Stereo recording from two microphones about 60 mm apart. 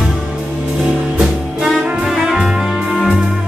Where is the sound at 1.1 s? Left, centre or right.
Centre.